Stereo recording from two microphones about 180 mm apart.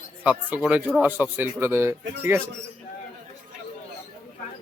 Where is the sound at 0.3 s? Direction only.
10° right (ahead or behind).